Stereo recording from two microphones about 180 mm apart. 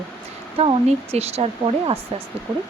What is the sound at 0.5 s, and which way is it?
Speech, 35° right (ahead or behind).